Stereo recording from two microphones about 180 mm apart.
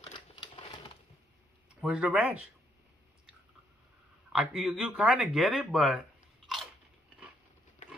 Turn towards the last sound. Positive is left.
turn(degrees=0)  # may be behind; listen again after turning